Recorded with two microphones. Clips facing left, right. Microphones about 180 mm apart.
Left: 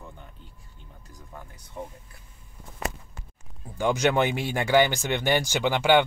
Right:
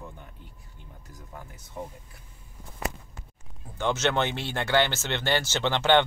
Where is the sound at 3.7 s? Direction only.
10° left (ahead or behind).